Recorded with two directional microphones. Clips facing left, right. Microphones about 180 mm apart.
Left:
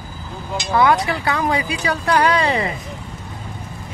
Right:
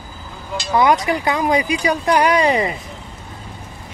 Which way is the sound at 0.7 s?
15° right (ahead or behind).